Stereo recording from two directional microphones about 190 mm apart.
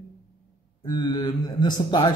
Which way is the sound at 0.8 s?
25° left (ahead or behind).